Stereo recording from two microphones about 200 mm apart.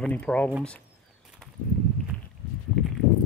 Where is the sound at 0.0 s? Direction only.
5° left (ahead or behind).